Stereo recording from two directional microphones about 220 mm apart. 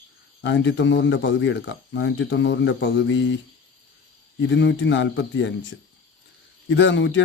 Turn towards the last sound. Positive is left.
turn(degrees=55)  # may be behind; listen again after turning